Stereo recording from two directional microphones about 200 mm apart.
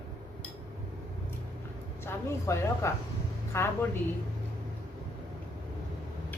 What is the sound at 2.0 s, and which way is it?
Speech, 15° left (ahead or behind).